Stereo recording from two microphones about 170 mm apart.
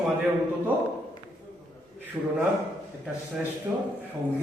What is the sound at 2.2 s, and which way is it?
Speech, 10° right (ahead or behind).